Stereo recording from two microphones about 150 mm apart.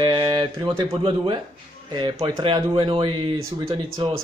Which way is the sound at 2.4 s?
35° right (ahead or behind).